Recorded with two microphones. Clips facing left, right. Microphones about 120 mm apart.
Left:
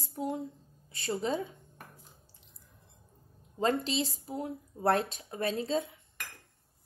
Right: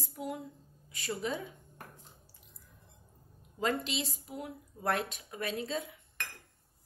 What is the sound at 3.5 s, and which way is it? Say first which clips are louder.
A woman's voice: left 4 dB; 30° left (ahead or behind).